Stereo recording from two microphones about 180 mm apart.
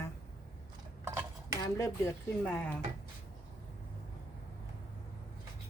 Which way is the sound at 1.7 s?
15° left (ahead or behind).